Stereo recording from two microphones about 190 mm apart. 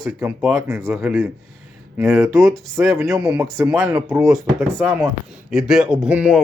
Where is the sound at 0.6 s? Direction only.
15° right (ahead or behind).